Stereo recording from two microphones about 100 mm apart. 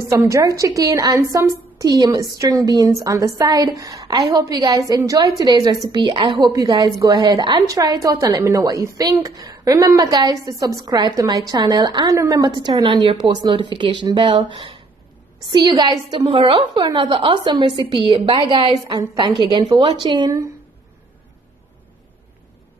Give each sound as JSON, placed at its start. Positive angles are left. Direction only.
{"t": 0.1, "sound": "a woman's voice", "side_deg": -35}
{"t": 6.4, "sound": "a woman's voice", "side_deg": -35}
{"t": 16.2, "sound": "a woman's voice", "side_deg": -75}
{"t": 16.7, "sound": "a woman's voice", "side_deg": -50}